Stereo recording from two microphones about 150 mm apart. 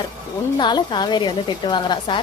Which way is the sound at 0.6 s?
30° left (ahead or behind).